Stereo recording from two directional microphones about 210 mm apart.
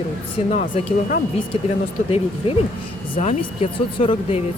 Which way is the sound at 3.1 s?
30° left (ahead or behind).